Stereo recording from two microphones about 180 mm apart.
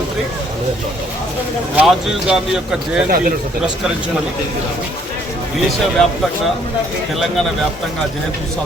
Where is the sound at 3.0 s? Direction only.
55° right (ahead or behind).